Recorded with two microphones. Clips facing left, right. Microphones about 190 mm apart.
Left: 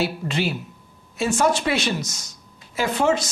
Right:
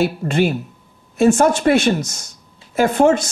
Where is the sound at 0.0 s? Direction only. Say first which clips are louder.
Right 7 dB; 50° right (ahead or behind).